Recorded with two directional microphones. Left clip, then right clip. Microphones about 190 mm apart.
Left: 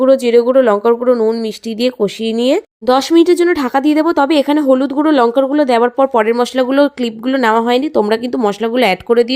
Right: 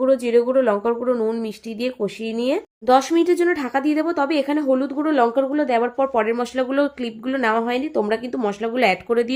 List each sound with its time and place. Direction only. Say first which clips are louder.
0.0 s speech: left 7 dB; 40° left (ahead or behind)